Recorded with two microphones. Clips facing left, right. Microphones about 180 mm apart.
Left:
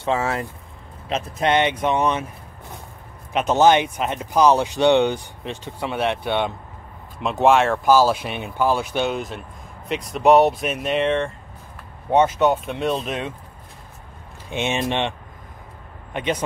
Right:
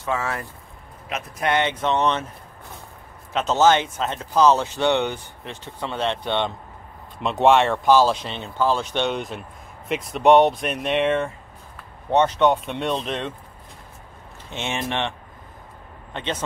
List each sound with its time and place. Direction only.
0.0 s speech: 30° left (ahead or behind); by 2.2 s 10° left (ahead or behind)
3.3 s speech: 15° left (ahead or behind); by 11.3 s centre (ahead or behind)
12.1 s speech: 10° left (ahead or behind)
14.5 s speech: 20° left (ahead or behind)